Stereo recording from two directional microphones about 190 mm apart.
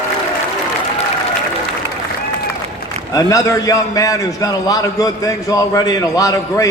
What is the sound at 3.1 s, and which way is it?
A man's voice, 15° left (ahead or behind).